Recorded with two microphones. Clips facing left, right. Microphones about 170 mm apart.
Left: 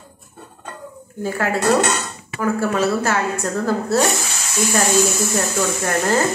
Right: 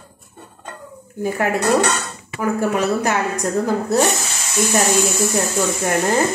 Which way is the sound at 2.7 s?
15° right (ahead or behind).